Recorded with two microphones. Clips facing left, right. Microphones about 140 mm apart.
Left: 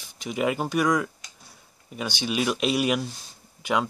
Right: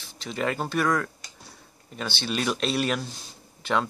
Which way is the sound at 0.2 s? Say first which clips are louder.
Left 3 dB; 10° left (ahead or behind).